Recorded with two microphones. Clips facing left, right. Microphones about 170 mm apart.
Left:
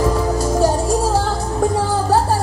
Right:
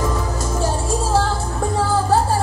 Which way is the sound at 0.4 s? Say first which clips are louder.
Left 6 dB; 35° left (ahead or behind).